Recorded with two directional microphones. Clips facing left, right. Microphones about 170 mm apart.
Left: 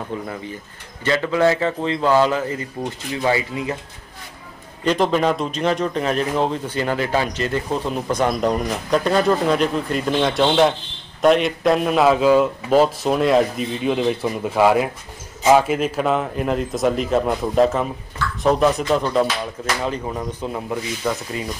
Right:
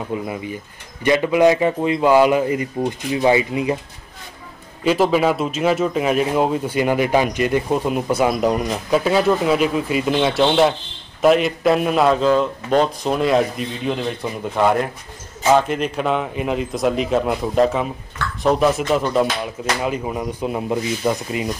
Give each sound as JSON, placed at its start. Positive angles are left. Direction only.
{"t": 0.1, "sound": "a man's voice", "side_deg": -15}
{"t": 4.8, "sound": "a man's voice", "side_deg": -5}